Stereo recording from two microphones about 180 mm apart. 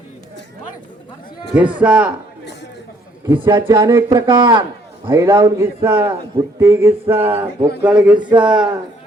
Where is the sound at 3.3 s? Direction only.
25° right (ahead or behind); by 7.7 s 10° right (ahead or behind).